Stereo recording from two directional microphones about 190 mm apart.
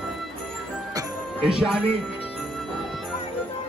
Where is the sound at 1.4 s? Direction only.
5° right (ahead or behind).